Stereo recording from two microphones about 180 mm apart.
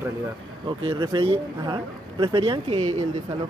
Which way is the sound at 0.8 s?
25° right (ahead or behind).